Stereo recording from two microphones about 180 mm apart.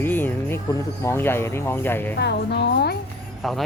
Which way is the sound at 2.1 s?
65° left (ahead or behind).